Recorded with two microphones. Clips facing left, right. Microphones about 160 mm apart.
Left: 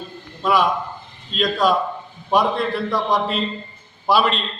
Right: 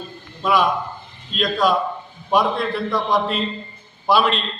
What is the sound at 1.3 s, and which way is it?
Speech, 5° right (ahead or behind).